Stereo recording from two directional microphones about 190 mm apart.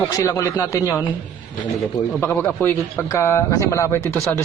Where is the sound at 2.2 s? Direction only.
10° left (ahead or behind).